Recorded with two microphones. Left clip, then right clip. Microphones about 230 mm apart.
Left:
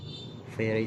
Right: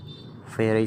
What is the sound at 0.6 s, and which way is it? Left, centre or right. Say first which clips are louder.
Speech: right 6 dB; right.